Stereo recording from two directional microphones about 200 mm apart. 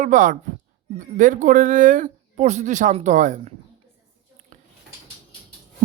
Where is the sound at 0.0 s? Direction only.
40° right (ahead or behind).